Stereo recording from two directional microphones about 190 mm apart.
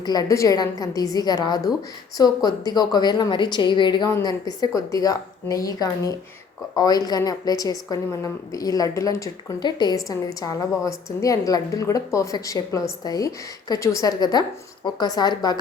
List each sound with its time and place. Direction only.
0.0 s a woman's voice: 20° left (ahead or behind)